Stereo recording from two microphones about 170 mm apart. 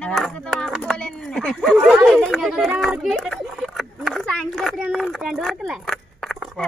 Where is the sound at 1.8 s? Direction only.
Centre (ahead or behind).